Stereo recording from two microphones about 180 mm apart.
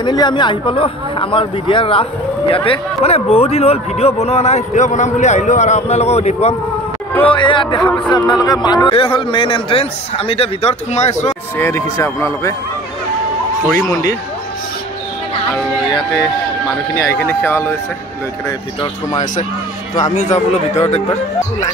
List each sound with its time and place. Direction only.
0.0 s speech: 25° left (ahead or behind)
7.3 s speech: 25° left (ahead or behind)
11.5 s speech: 15° left (ahead or behind)
17.1 s speech: 10° left (ahead or behind)
20.0 s speech: 40° left (ahead or behind)
21.1 s speech: 15° left (ahead or behind)